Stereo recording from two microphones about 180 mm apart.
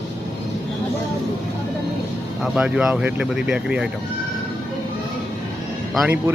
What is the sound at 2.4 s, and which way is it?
Speech, 5° right (ahead or behind).